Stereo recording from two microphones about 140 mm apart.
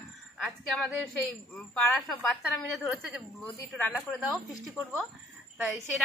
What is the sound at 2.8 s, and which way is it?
Speech, 5° right (ahead or behind).